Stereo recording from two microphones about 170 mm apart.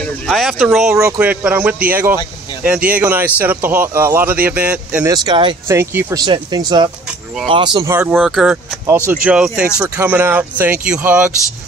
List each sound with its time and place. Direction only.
0.0 s speech: centre (ahead or behind)
0.9 s speech: 15° right (ahead or behind)
5.0 s speech: 25° right (ahead or behind)
5.7 s speech: 15° right (ahead or behind)
6.2 s speech: 25° right (ahead or behind)
8.1 s speech: centre (ahead or behind)